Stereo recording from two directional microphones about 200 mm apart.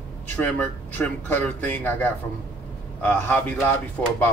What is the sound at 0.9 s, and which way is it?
Speech, 10° left (ahead or behind).